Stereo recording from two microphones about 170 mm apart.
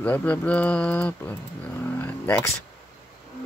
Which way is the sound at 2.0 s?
10° left (ahead or behind).